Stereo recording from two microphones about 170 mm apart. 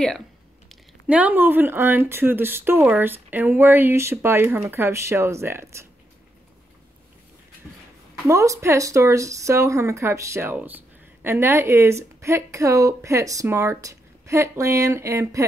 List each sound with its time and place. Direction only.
1.0 s speech: 10° right (ahead or behind)
8.3 s speech: 15° right (ahead or behind)